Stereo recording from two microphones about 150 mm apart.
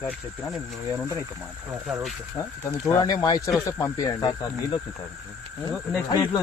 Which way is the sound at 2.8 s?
20° left (ahead or behind).